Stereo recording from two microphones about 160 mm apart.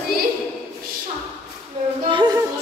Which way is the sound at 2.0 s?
30° right (ahead or behind).